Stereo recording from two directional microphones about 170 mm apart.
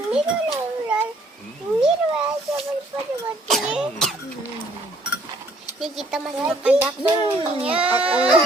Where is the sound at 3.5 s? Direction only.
Centre (ahead or behind).